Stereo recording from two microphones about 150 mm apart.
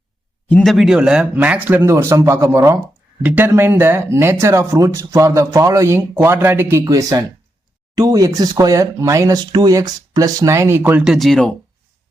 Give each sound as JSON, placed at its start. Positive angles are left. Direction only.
{"t": 0.4, "sound": "speech", "side_deg": 5}
{"t": 11.0, "sound": "speech", "side_deg": 0}